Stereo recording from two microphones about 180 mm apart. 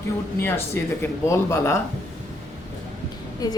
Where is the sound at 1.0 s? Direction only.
15° left (ahead or behind).